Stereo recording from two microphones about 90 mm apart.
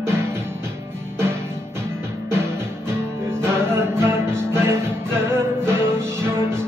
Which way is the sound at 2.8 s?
25° right (ahead or behind).